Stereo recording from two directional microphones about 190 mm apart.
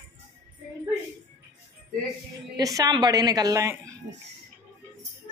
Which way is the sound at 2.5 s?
20° right (ahead or behind).